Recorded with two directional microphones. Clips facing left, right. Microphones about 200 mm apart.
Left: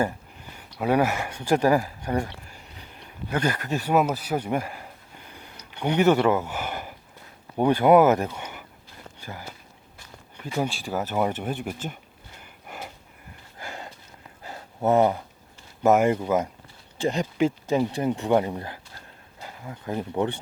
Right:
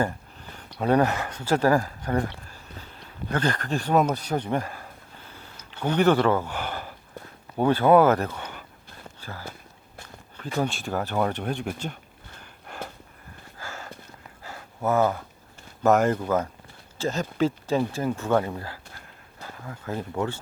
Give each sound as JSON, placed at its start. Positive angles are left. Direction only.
{"t": 0.5, "sound": "speech", "side_deg": 10}
{"t": 2.5, "sound": "a sound", "side_deg": 15}
{"t": 7.5, "sound": "speech", "side_deg": 15}
{"t": 10.3, "sound": "speech", "side_deg": 15}
{"t": 12.4, "sound": "a sound", "side_deg": 10}
{"t": 15.8, "sound": "speech", "side_deg": 10}